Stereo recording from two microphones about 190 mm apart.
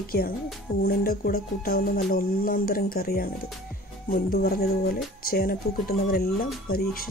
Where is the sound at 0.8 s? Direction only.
50° left (ahead or behind).